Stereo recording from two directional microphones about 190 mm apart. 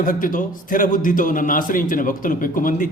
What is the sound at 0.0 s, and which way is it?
A man's voice, 45° left (ahead or behind).